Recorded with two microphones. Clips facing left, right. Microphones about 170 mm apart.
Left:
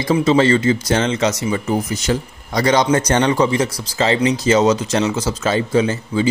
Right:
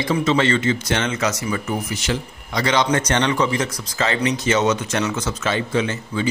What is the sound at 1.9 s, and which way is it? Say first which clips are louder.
A man's voice: left 4 dB; 40° left (ahead or behind).